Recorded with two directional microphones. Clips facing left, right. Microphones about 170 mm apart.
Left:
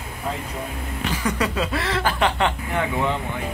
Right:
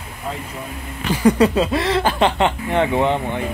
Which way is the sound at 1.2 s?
30° right (ahead or behind).